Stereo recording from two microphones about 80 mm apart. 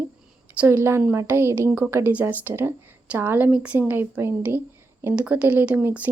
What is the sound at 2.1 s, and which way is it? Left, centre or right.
Speech, right.